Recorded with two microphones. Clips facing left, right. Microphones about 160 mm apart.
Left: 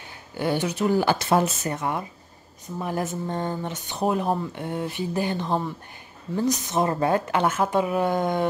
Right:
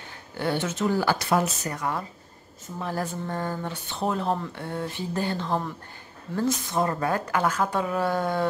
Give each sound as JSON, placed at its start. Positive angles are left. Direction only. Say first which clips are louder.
{"t": 0.3, "sound": "a woman's voice", "louder": "left 2 dB", "side_deg": 15}